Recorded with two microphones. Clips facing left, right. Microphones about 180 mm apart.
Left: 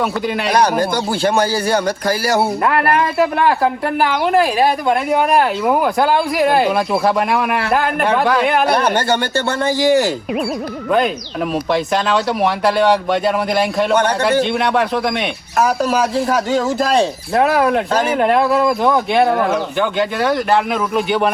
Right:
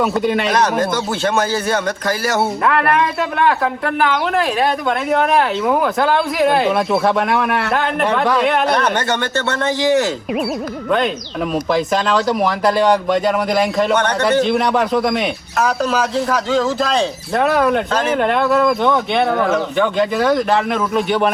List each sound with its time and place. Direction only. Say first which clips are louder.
0.2 s speech: right 3 dB; centre (ahead or behind)
0.6 s speech: left 1 dB; 35° left (ahead or behind)
2.4 s speech: left 1 dB; centre (ahead or behind)
9.0 s speech: left 2 dB; 30° left (ahead or behind)
9.7 s speech: left 2 dB; centre (ahead or behind)
17.3 s speech: left 1 dB; 5° left (ahead or behind)